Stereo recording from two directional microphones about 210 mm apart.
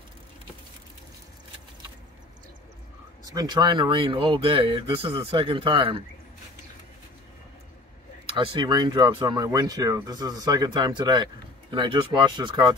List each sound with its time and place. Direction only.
3.3 s speech: 20° right (ahead or behind)
8.5 s speech: 20° right (ahead or behind)